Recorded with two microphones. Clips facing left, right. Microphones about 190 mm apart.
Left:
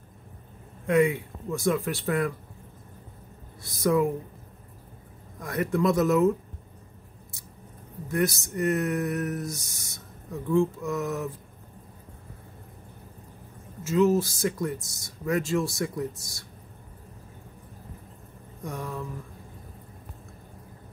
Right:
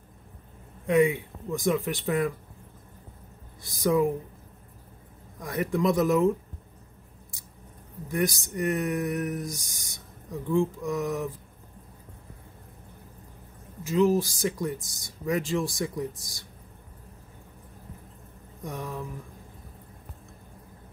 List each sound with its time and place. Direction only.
0.8 s speech: 15° right (ahead or behind)
3.8 s speech: 15° right (ahead or behind)
5.4 s speech: 15° right (ahead or behind)
8.1 s speech: 15° right (ahead or behind)
13.8 s speech: 15° right (ahead or behind)
18.8 s speech: 15° right (ahead or behind)